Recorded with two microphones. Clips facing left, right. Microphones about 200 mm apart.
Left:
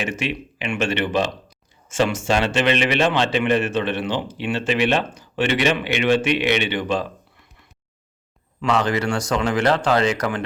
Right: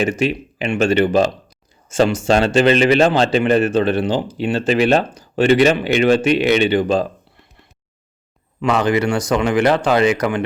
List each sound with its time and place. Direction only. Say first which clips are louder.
0.0 s speech: right 7 dB; 40° right (ahead or behind)
9.2 s speech: right 5 dB; 5° right (ahead or behind)
9.8 s speech: right 4 dB; 15° right (ahead or behind)